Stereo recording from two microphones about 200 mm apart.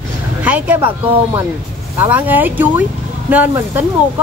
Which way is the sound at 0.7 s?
25° right (ahead or behind).